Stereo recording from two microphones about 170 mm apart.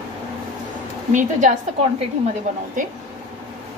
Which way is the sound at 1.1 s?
45° right (ahead or behind).